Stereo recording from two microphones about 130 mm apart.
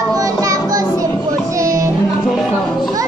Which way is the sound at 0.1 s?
25° right (ahead or behind).